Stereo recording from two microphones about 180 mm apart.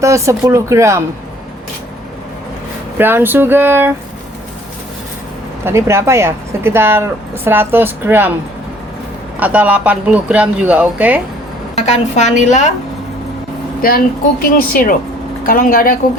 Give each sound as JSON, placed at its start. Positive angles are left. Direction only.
{"t": 0.0, "sound": "speech", "side_deg": -15}
{"t": 3.0, "sound": "speech", "side_deg": -10}
{"t": 5.6, "sound": "speech", "side_deg": -15}
{"t": 9.4, "sound": "speech", "side_deg": -10}
{"t": 11.7, "sound": "a woman's voice", "side_deg": 40}
{"t": 13.8, "sound": "a woman's voice", "side_deg": 55}